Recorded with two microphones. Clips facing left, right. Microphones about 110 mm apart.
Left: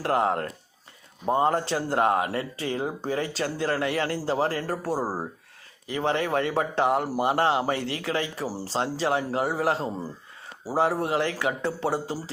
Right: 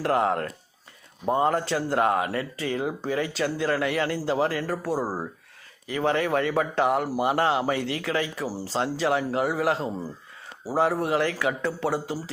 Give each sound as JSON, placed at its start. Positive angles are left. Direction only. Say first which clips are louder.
{"t": 0.0, "sound": "a man's voice", "louder": "right 1 dB", "side_deg": 25}
{"t": 5.9, "sound": "a man's voice", "louder": "right 1 dB", "side_deg": 25}